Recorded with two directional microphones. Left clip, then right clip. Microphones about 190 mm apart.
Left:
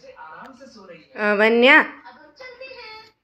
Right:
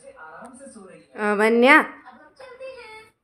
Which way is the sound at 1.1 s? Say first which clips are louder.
Left 2 dB; 10° right (ahead or behind).